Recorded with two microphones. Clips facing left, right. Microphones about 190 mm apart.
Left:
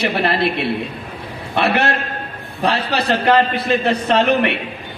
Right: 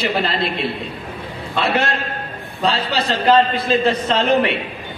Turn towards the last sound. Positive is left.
turn(degrees=65)  # may be behind; listen again after turning